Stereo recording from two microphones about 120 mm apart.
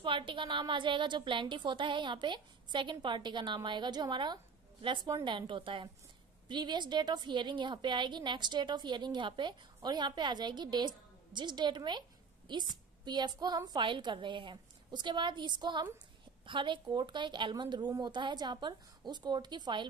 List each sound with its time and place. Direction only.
0.0 s a woman's voice: 45° right (ahead or behind)